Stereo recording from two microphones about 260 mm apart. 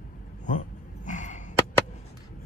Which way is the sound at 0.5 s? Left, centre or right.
Left.